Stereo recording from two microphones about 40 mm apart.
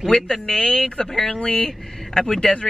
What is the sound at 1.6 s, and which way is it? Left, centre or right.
Speech, centre.